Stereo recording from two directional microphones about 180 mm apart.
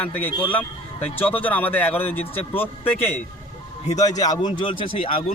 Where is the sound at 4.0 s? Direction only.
20° left (ahead or behind).